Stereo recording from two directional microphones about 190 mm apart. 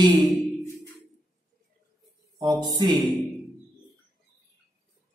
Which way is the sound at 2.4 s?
20° right (ahead or behind).